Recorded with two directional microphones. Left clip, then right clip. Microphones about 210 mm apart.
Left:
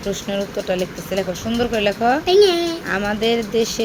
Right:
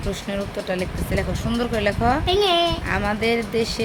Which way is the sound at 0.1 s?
5° right (ahead or behind).